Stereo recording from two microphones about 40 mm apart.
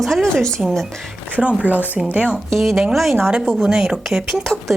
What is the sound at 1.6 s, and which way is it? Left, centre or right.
Speech, right.